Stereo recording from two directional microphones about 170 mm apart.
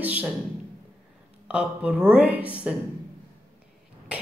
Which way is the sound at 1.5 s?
5° right (ahead or behind).